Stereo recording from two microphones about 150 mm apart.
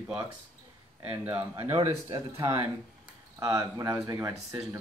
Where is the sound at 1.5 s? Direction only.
15° right (ahead or behind).